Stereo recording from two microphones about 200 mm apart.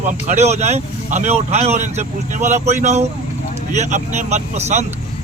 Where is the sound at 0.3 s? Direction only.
35° right (ahead or behind).